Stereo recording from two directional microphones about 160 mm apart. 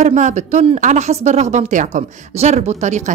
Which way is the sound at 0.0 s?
50° right (ahead or behind).